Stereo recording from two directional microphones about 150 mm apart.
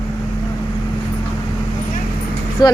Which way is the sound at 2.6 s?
30° left (ahead or behind).